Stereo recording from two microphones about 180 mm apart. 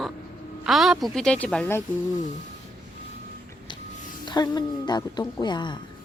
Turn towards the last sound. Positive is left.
turn(degrees=25)  # may be behind; listen again after turning